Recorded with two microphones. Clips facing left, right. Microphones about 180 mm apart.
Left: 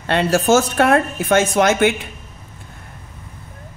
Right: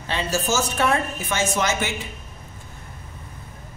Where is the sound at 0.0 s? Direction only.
65° left (ahead or behind).